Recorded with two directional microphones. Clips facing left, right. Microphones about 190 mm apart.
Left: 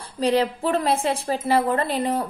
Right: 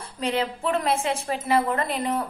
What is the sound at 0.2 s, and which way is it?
A woman's voice, 35° left (ahead or behind).